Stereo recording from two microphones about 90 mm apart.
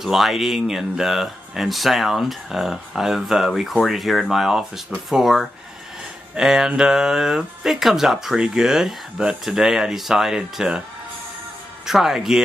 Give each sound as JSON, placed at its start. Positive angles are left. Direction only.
{"t": 0.0, "sound": "speech", "side_deg": -5}
{"t": 11.8, "sound": "speech", "side_deg": -5}